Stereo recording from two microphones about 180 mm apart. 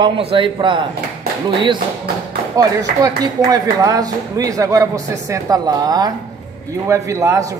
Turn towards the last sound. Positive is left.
turn(degrees=-20)  # may be behind; listen again after turning